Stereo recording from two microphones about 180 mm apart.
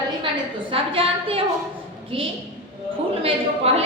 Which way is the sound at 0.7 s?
30° right (ahead or behind).